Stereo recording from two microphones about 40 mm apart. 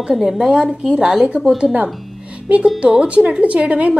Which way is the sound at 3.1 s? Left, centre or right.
Right.